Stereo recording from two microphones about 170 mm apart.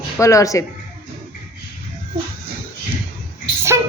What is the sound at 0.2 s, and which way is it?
Speech, 20° left (ahead or behind).